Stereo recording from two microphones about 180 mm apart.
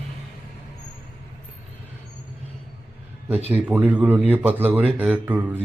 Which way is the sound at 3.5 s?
10° right (ahead or behind).